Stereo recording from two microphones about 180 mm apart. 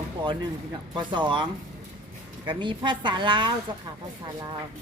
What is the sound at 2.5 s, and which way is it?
Speech, 25° right (ahead or behind).